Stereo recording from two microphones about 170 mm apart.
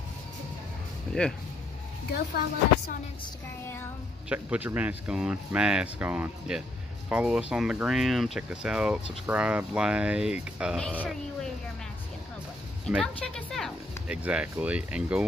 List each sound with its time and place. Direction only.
1.1 s speech: 5° left (ahead or behind)
2.0 s speech: 75° left (ahead or behind)
4.3 s speech: 10° right (ahead or behind)
12.8 s speech: centre (ahead or behind)